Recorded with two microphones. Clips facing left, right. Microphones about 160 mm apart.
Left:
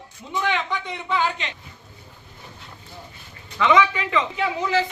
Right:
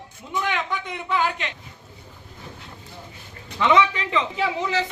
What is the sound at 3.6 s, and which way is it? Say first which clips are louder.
Speech: left 1 dB; 25° right (ahead or behind).